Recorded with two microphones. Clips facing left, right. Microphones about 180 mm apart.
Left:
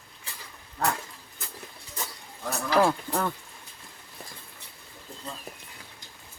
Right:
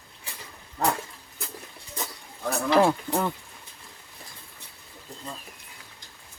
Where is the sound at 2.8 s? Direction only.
15° right (ahead or behind).